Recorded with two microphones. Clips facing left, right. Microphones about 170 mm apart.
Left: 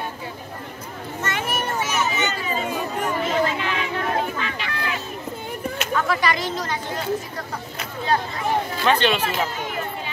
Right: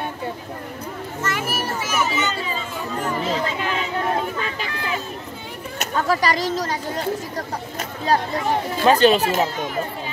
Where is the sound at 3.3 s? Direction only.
40° right (ahead or behind).